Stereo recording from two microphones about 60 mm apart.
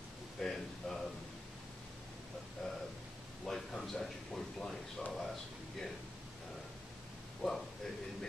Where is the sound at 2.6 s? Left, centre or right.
Centre.